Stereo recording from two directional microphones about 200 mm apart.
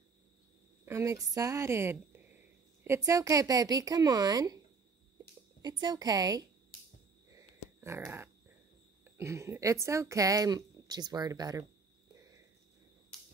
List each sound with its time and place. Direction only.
0.8 s speech: 15° right (ahead or behind)
5.6 s a woman's voice: 20° right (ahead or behind)
7.2 s a sound: 15° right (ahead or behind)
9.0 s speech: 15° right (ahead or behind)